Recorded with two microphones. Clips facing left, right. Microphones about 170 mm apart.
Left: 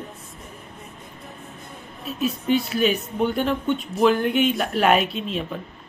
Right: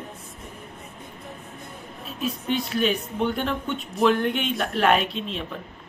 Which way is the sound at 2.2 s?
5° left (ahead or behind).